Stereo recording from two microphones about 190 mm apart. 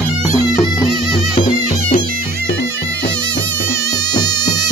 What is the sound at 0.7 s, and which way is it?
Music, centre (ahead or behind).